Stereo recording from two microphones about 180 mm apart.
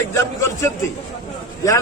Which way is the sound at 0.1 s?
15° left (ahead or behind).